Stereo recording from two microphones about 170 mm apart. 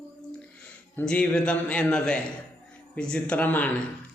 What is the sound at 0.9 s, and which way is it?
A man's voice, 5° left (ahead or behind).